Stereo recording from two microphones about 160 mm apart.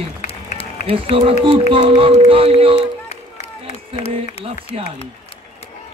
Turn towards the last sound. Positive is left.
turn(degrees=-35)  # may be behind; listen again after turning